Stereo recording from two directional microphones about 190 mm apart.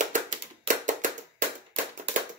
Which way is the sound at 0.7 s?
40° right (ahead or behind).